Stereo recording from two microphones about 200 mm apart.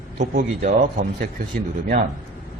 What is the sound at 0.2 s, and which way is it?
Speech, 40° right (ahead or behind).